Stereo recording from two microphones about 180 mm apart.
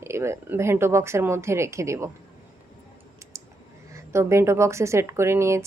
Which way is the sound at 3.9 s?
15° right (ahead or behind).